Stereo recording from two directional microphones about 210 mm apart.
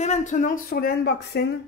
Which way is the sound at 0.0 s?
35° left (ahead or behind).